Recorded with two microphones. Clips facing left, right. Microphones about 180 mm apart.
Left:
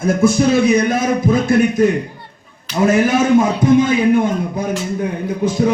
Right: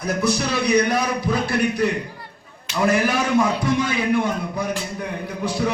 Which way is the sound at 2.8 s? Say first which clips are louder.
Left 6 dB; 45° left (ahead or behind).